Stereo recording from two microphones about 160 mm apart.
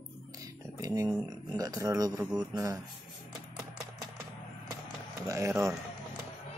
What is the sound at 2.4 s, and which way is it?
Speech, 25° right (ahead or behind).